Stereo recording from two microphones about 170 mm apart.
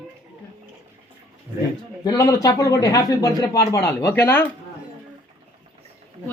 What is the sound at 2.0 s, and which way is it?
A man's voice, 20° left (ahead or behind).